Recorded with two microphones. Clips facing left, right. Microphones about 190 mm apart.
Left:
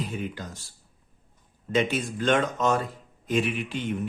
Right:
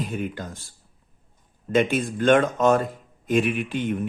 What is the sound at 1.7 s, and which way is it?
A man's voice, 50° right (ahead or behind).